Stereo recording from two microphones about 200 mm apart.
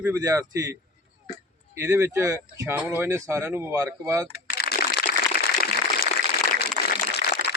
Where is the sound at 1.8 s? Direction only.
10° right (ahead or behind).